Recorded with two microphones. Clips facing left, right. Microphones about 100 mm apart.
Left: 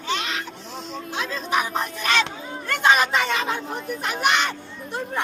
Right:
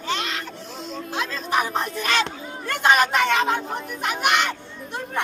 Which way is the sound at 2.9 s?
60° right (ahead or behind).